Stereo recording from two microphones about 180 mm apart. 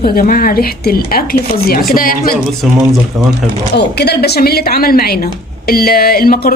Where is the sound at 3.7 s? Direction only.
65° left (ahead or behind).